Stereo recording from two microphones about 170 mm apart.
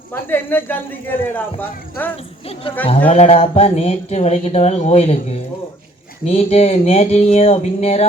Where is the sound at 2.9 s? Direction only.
35° left (ahead or behind).